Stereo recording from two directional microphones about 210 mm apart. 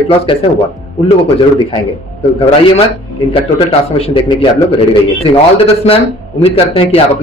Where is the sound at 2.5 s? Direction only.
30° left (ahead or behind).